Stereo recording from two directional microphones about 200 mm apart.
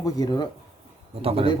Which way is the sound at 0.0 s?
20° left (ahead or behind).